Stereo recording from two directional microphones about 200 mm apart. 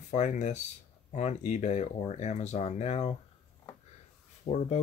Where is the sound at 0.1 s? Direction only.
35° left (ahead or behind).